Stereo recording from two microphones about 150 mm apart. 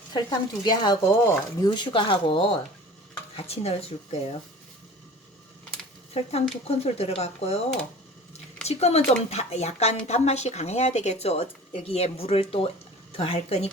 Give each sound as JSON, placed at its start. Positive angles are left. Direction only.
{"t": 0.1, "sound": "speech", "side_deg": 30}
{"t": 1.2, "sound": "speech", "side_deg": 15}
{"t": 1.7, "sound": "a woman's voice", "side_deg": 30}
{"t": 6.1, "sound": "a woman's voice", "side_deg": 40}
{"t": 8.6, "sound": "a woman's voice", "side_deg": 45}